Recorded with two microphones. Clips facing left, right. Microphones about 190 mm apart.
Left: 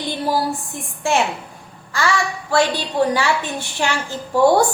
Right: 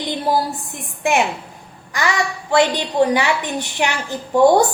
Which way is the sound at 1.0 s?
20° right (ahead or behind).